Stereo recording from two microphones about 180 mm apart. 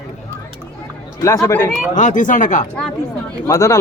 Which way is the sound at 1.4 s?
15° left (ahead or behind).